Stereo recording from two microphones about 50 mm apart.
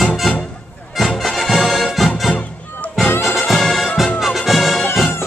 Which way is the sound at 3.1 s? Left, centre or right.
Left.